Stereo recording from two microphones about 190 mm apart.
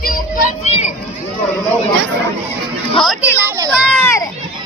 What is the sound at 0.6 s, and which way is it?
Children playing, 35° left (ahead or behind).